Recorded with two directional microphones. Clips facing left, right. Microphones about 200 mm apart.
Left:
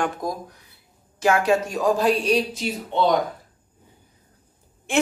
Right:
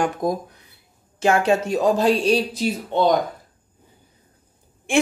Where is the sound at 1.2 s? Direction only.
25° right (ahead or behind).